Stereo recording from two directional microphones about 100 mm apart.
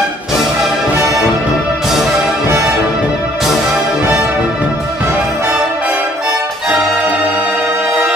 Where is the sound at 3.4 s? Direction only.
5° right (ahead or behind).